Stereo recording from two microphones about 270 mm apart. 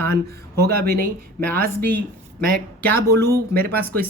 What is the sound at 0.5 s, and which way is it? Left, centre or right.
Speech, right.